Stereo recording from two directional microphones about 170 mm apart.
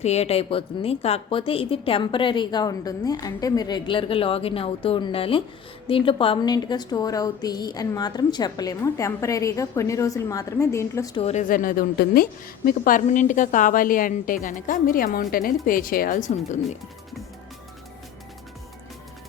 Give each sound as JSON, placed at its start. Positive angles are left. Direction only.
{"t": 0.0, "sound": "a woman's voice", "side_deg": 40}
{"t": 11.2, "sound": "a woman's voice", "side_deg": 40}
{"t": 11.4, "sound": "a woman's voice", "side_deg": 55}